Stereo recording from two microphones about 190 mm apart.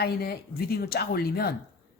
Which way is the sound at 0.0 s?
55° left (ahead or behind).